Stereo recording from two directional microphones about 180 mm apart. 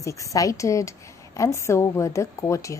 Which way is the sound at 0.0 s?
15° left (ahead or behind).